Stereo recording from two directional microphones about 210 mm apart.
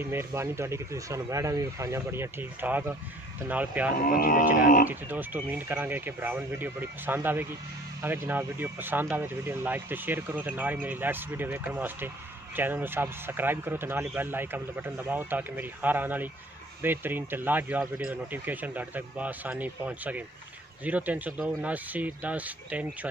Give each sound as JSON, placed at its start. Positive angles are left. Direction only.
{"t": 0.0, "sound": "speech", "side_deg": -10}
{"t": 4.0, "sound": "a sound", "side_deg": 40}
{"t": 4.8, "sound": "speech", "side_deg": -10}